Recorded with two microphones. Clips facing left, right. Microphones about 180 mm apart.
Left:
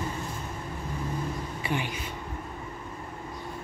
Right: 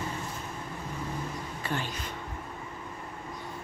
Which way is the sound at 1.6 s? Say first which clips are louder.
Left 3 dB; 15° left (ahead or behind).